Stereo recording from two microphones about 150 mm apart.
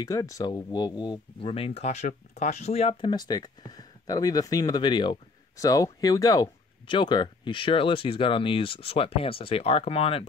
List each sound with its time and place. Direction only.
0.0 s speech: 25° left (ahead or behind); by 3.1 s 40° left (ahead or behind)
3.1 s speech: 25° left (ahead or behind)